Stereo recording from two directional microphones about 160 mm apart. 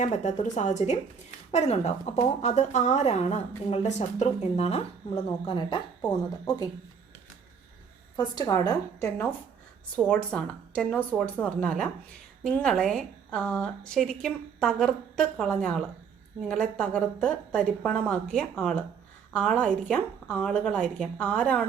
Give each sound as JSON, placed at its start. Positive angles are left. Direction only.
{"t": 0.0, "sound": "a woman's voice", "side_deg": 50}
{"t": 8.1, "sound": "a woman's voice", "side_deg": 25}
{"t": 9.9, "sound": "a woman's voice", "side_deg": 5}